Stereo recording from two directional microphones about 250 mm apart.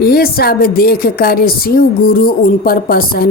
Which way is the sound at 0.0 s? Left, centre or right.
Left.